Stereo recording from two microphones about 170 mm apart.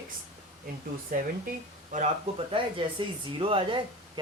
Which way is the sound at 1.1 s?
55° right (ahead or behind).